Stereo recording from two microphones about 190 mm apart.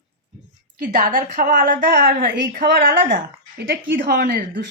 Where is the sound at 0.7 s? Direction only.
45° right (ahead or behind).